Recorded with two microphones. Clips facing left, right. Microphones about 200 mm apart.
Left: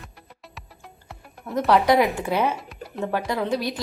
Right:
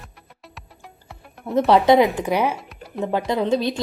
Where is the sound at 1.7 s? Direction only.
25° right (ahead or behind).